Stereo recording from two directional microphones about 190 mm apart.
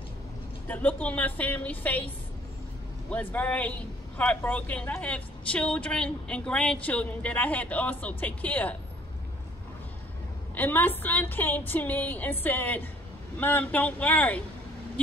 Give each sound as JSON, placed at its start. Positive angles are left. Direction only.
{"t": 0.7, "sound": "speech", "side_deg": 10}
{"t": 3.1, "sound": "speech", "side_deg": 10}
{"t": 10.5, "sound": "speech", "side_deg": 10}